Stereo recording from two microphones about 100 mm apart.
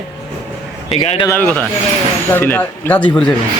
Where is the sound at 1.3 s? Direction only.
20° left (ahead or behind).